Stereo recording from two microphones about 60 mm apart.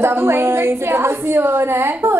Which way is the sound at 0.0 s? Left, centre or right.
Right.